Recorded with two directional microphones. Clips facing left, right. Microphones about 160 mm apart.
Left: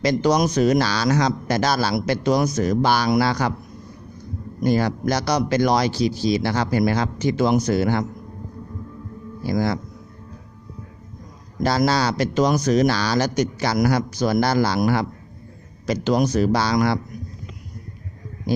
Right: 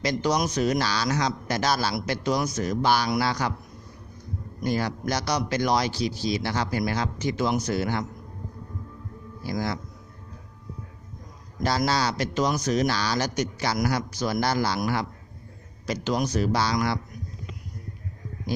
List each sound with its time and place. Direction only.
0.0 s speech: 85° left
4.6 s speech: 70° left (ahead or behind); by 6.0 s 90° left
6.4 s speech: 75° left (ahead or behind)
9.5 s speech: 75° left (ahead or behind)
11.6 s speech: 85° left
15.9 s speech: 85° left